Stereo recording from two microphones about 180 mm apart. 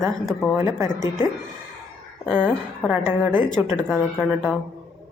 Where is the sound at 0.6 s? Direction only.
15° right (ahead or behind).